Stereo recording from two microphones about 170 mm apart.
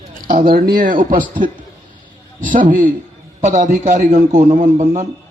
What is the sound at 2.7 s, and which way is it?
A man's voice, 55° right (ahead or behind).